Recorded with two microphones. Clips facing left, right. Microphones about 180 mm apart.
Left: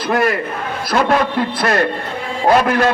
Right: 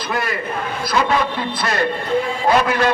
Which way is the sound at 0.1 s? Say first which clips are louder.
Left 8 dB; 50° left (ahead or behind).